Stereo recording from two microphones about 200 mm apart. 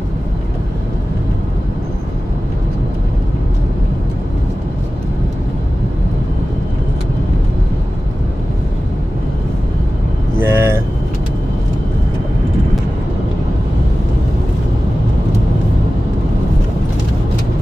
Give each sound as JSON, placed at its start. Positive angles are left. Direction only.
{"t": 10.4, "sound": "vehicle", "side_deg": -10}